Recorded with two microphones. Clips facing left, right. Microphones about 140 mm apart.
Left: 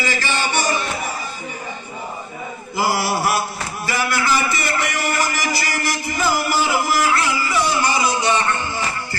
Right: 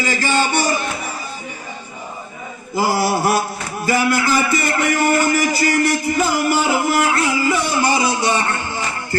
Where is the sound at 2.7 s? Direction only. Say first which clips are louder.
Right 3 dB; 45° right (ahead or behind).